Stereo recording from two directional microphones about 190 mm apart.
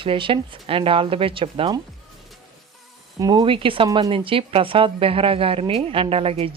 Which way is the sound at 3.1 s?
20° right (ahead or behind).